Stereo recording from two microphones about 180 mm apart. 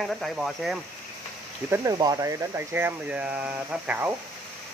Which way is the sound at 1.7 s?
20° right (ahead or behind).